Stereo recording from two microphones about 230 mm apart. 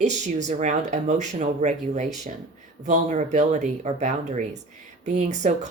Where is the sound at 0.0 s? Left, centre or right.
Right.